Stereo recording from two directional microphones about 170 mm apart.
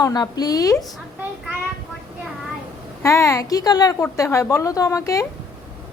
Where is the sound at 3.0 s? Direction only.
15° left (ahead or behind).